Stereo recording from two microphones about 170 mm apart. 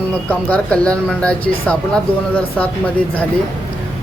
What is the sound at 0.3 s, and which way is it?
A woman's voice, 10° left (ahead or behind).